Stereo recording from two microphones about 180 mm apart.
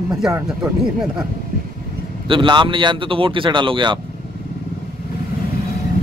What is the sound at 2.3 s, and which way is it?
Speech, 30° right (ahead or behind).